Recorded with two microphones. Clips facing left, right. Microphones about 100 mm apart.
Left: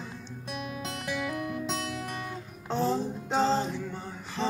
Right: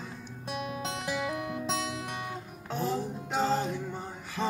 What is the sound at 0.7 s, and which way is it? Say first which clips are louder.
Music: even; 25° right (ahead or behind).